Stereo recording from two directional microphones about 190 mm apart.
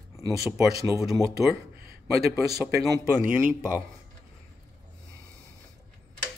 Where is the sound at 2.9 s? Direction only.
10° right (ahead or behind).